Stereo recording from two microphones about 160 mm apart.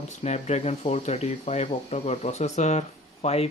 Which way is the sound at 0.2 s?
45° left (ahead or behind).